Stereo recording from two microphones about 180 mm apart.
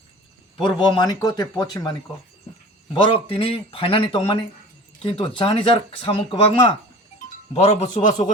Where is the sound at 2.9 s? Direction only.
30° left (ahead or behind).